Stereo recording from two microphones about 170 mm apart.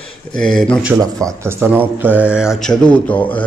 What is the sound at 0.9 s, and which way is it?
Speech, 15° right (ahead or behind).